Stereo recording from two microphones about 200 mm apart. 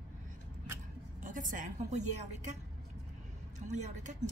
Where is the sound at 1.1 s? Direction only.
40° right (ahead or behind).